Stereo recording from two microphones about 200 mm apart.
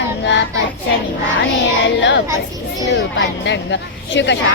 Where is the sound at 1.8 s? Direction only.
65° left (ahead or behind).